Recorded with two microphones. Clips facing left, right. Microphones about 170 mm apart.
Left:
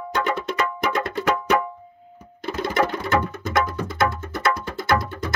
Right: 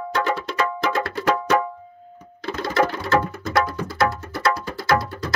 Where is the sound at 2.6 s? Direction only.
20° left (ahead or behind).